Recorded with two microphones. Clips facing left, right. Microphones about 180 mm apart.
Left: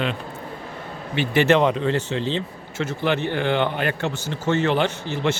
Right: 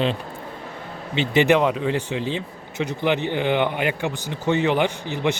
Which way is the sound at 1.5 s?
5° right (ahead or behind).